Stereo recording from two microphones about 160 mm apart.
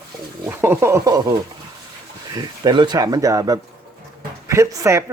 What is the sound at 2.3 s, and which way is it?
Speech, 25° right (ahead or behind).